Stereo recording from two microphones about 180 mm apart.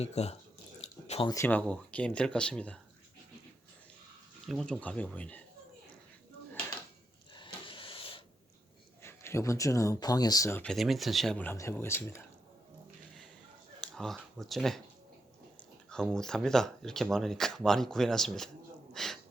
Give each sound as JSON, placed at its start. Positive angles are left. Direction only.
{"t": 0.0, "sound": "speech", "side_deg": 35}
{"t": 0.8, "sound": "drip", "side_deg": 35}
{"t": 1.3, "sound": "speech", "side_deg": 10}
{"t": 4.4, "sound": "speech", "side_deg": 5}
{"t": 7.3, "sound": "a sound", "side_deg": 25}
{"t": 9.0, "sound": "speech", "side_deg": 15}
{"t": 10.6, "sound": "speech", "side_deg": 0}
{"t": 13.8, "sound": "speech", "side_deg": 5}
{"t": 15.9, "sound": "speech", "side_deg": 5}